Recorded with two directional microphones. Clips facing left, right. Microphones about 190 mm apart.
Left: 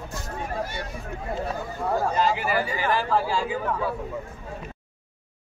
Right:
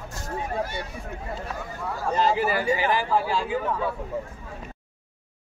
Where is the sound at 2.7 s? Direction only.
15° right (ahead or behind).